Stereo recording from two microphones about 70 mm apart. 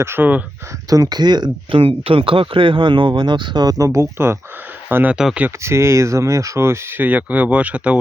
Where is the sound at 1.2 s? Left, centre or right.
Right.